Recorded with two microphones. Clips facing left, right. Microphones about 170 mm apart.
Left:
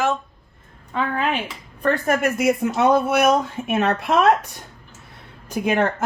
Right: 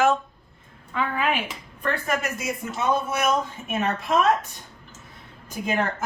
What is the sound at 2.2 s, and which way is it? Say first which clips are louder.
Speech: left 10 dB; 65° left (ahead or behind).